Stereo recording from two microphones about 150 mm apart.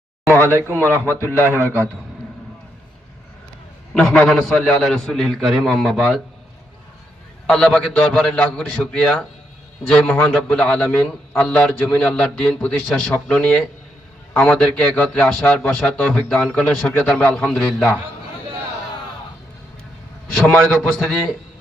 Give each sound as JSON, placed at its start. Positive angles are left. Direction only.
{"t": 0.8, "sound": "a man's voice", "side_deg": 15}
{"t": 3.9, "sound": "a man's voice", "side_deg": 5}
{"t": 7.4, "sound": "a man's voice", "side_deg": 5}
{"t": 20.3, "sound": "a man's voice", "side_deg": 5}